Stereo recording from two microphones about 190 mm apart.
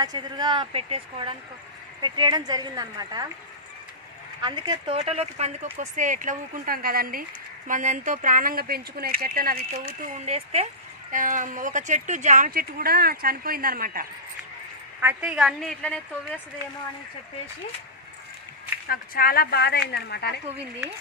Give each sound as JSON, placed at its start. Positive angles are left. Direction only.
{"t": 0.0, "sound": "a woman's voice", "side_deg": -20}
{"t": 4.4, "sound": "a woman's voice", "side_deg": -25}
{"t": 4.9, "sound": "speech", "side_deg": -35}
{"t": 9.8, "sound": "speech", "side_deg": -40}
{"t": 15.0, "sound": "a woman's voice", "side_deg": -10}
{"t": 18.9, "sound": "speech", "side_deg": 50}